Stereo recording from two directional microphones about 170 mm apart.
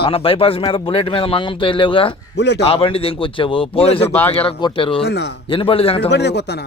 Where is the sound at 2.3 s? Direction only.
80° left.